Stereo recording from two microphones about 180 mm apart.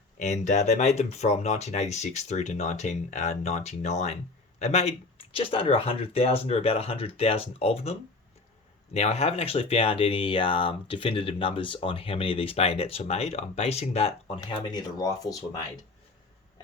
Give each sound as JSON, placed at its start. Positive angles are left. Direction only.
{"t": 0.2, "sound": "speech", "side_deg": 40}
{"t": 14.4, "sound": "speech", "side_deg": 20}